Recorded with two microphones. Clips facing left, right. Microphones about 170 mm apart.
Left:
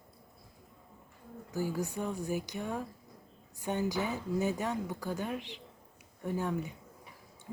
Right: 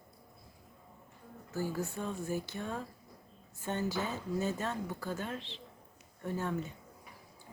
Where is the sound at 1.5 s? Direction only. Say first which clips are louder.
Left 2 dB; 15° left (ahead or behind).